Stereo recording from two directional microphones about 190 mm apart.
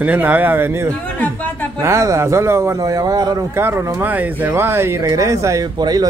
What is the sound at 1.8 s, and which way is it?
Speech, 15° right (ahead or behind).